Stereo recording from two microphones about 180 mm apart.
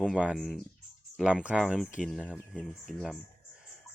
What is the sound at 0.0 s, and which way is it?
Speech, 5° right (ahead or behind).